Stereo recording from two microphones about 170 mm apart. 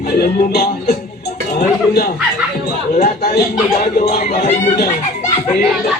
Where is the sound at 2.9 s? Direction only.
45° left (ahead or behind).